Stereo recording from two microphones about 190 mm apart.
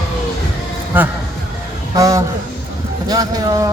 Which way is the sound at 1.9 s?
15° right (ahead or behind).